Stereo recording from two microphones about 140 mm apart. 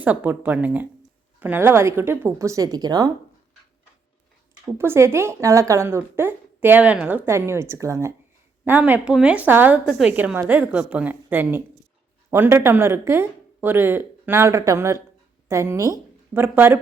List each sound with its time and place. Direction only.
0.0 s a woman's voice: 10° right (ahead or behind); by 3.1 s 30° right (ahead or behind)
4.8 s a woman's voice: 20° right (ahead or behind)